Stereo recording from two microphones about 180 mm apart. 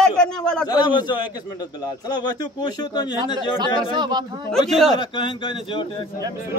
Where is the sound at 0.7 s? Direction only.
25° left (ahead or behind).